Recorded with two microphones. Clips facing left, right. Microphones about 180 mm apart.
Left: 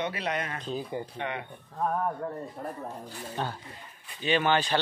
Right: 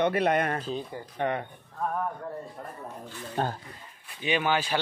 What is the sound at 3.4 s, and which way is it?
Speech, 45° right (ahead or behind).